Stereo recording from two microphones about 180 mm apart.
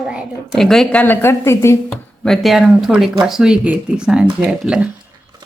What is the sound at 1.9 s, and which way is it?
Speech, centre (ahead or behind).